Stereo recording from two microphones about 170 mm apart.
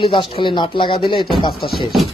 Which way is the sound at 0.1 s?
30° left (ahead or behind).